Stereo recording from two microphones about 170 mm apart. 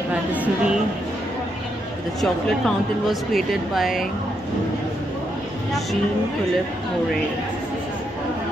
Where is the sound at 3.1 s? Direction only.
Centre (ahead or behind).